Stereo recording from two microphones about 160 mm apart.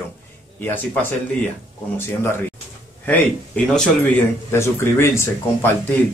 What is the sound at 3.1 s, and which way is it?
A man's voice, 5° left (ahead or behind).